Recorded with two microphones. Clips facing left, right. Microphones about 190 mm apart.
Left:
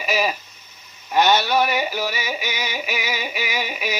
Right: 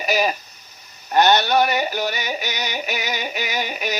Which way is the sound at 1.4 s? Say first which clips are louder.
Right 1 dB; 5° left (ahead or behind).